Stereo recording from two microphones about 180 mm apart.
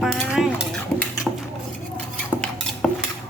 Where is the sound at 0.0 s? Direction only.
Centre (ahead or behind).